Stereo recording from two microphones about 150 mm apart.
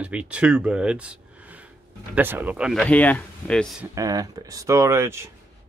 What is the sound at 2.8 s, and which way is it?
Speech, 10° left (ahead or behind).